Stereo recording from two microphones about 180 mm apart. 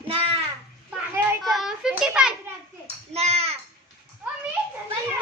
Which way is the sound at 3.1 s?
35° right (ahead or behind).